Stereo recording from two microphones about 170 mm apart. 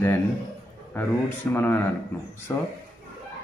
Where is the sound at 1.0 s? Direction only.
10° left (ahead or behind).